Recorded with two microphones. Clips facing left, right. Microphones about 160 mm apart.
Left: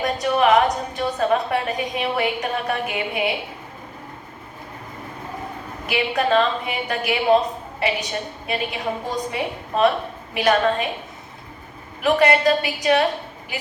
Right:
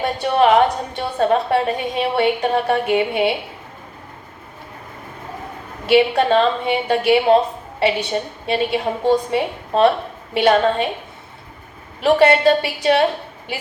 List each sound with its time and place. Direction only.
0.0 s a sound: 30° right (ahead or behind)
0.9 s a woman's voice: 30° right (ahead or behind)
5.8 s a woman's voice: 30° right (ahead or behind)
12.0 s a woman's voice: 30° right (ahead or behind)